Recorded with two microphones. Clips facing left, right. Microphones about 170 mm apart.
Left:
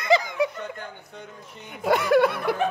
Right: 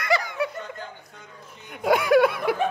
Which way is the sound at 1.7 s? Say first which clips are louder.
Right 1 dB; centre (ahead or behind).